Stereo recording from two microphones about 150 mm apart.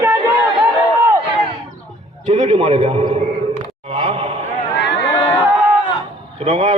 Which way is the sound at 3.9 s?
45° right (ahead or behind).